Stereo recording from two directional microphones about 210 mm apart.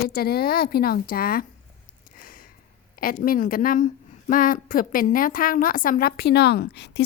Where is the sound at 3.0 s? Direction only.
45° left (ahead or behind).